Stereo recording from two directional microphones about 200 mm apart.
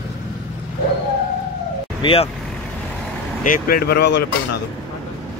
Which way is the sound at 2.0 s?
25° left (ahead or behind).